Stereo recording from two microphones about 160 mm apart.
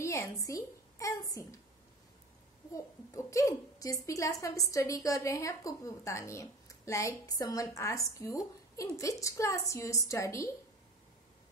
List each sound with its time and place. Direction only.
0.0 s a woman's voice: 15° left (ahead or behind)
2.7 s a woman's voice: 20° left (ahead or behind)